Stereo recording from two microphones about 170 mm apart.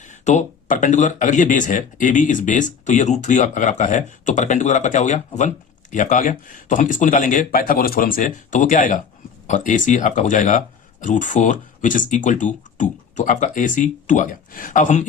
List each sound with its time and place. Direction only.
0.0 s speech: 45° left (ahead or behind)